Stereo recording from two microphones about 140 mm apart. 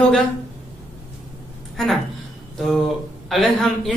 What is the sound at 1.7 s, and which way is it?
Speech, centre (ahead or behind).